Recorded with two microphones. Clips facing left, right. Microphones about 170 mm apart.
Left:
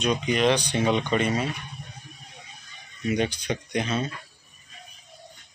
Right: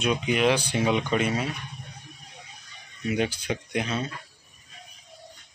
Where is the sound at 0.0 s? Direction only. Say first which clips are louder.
Left 1 dB; 5° right (ahead or behind).